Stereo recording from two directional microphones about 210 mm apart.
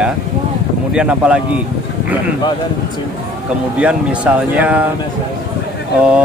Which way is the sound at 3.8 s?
5° right (ahead or behind).